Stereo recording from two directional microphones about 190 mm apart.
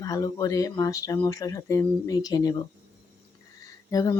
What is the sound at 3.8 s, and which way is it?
Speech, 15° left (ahead or behind).